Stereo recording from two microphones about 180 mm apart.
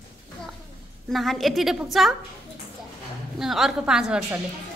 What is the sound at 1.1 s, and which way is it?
A woman's voice, centre (ahead or behind).